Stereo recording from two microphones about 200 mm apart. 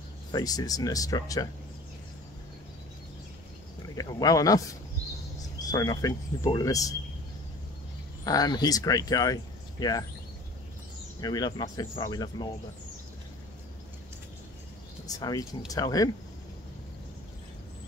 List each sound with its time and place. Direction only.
0.3 s speech: 20° left (ahead or behind)
3.9 s speech: 20° left (ahead or behind)
8.2 s speech: 20° left (ahead or behind)
11.1 s speech: 20° left (ahead or behind)
15.0 s speech: 20° left (ahead or behind)